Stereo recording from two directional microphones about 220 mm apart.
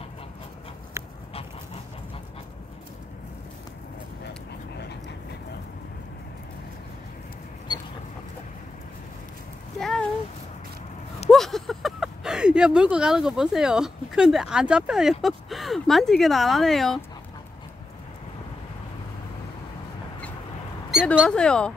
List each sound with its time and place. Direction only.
9.8 s a sound: centre (ahead or behind)
11.2 s speech: centre (ahead or behind)
21.2 s speech: 5° left (ahead or behind)